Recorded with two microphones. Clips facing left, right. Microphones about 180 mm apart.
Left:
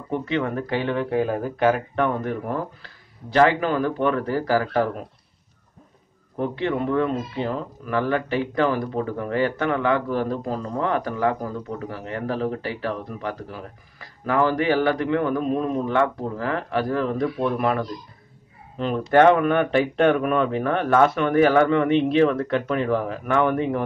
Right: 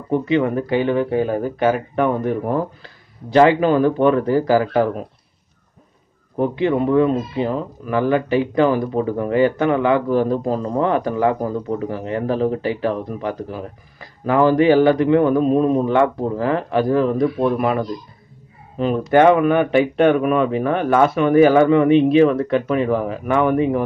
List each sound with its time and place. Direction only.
0.2 s speech: 15° right (ahead or behind)
6.4 s speech: 15° right (ahead or behind)